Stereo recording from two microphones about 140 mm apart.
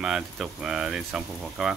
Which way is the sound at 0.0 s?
5° right (ahead or behind).